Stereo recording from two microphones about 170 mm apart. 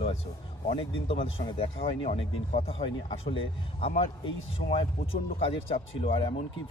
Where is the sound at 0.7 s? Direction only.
30° left (ahead or behind).